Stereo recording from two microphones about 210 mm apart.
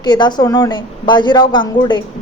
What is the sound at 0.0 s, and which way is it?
Speech, 20° left (ahead or behind).